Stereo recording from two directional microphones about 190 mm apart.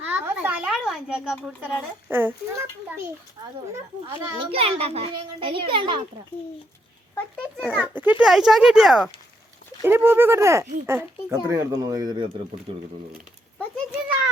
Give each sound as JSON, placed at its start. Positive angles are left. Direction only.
{"t": 0.0, "sound": "a child's voice", "side_deg": -10}
{"t": 4.1, "sound": "a child's voice", "side_deg": -25}
{"t": 7.5, "sound": "a child's voice", "side_deg": 0}
{"t": 7.8, "sound": "a child's voice", "side_deg": -10}